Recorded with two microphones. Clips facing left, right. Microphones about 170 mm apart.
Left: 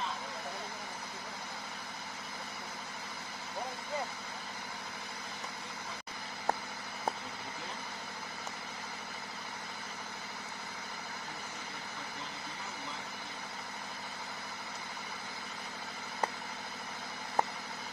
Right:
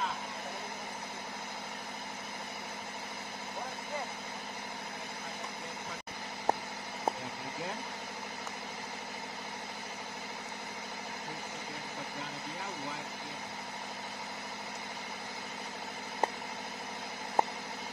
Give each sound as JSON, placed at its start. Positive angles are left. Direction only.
{"t": 17.4, "sound": "vehicle", "side_deg": -25}